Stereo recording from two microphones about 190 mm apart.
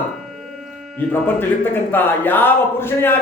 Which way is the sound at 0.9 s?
10° left (ahead or behind).